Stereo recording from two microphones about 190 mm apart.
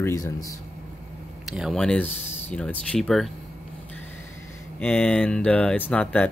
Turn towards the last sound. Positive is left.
turn(degrees=5)  # may be behind; listen again after turning